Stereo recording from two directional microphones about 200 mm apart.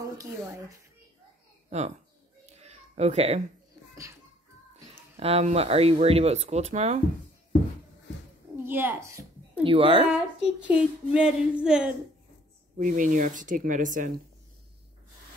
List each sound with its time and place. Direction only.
0.0 s speech: 15° right (ahead or behind)
1.7 s speech: 35° right (ahead or behind)
2.5 s a sound: 35° right (ahead or behind)
5.2 s speech: 30° right (ahead or behind)
8.6 s a child's voice: 10° right (ahead or behind)
9.6 s a woman's voice: 25° right (ahead or behind)
10.1 s child singing: 5° right (ahead or behind)
12.7 s speech: 40° right (ahead or behind)